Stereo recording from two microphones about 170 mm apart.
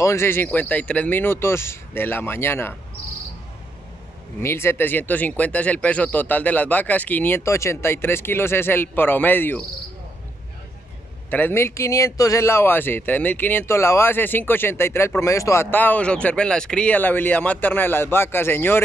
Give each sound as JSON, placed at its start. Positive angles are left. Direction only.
{"t": 0.0, "sound": "speech", "side_deg": 15}
{"t": 4.4, "sound": "speech", "side_deg": 15}
{"t": 11.2, "sound": "speech", "side_deg": 10}